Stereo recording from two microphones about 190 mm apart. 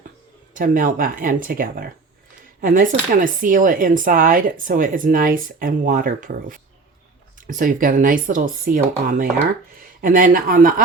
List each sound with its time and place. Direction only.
0.5 s speech: 45° right (ahead or behind)